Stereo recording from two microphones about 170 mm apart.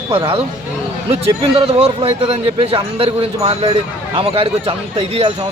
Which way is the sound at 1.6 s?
35° right (ahead or behind).